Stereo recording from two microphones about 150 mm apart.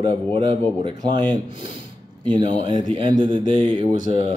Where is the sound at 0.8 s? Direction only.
30° right (ahead or behind).